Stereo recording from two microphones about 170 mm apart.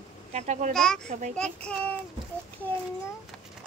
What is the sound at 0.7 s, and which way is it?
Child singing, 5° left (ahead or behind).